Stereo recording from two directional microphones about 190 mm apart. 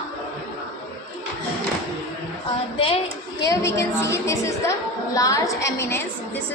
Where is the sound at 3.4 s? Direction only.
15° left (ahead or behind).